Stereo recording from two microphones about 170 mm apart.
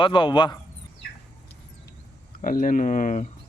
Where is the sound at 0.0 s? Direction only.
30° left (ahead or behind).